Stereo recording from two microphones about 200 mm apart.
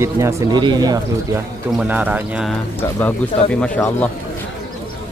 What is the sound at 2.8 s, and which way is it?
Speech, 10° left (ahead or behind).